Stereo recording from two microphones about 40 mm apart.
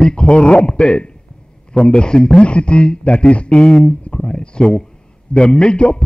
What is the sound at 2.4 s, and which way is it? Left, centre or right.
Speech, left.